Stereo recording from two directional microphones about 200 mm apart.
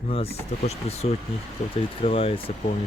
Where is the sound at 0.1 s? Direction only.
30° left (ahead or behind).